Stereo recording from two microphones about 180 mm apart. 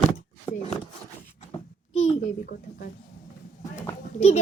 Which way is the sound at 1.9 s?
35° left (ahead or behind).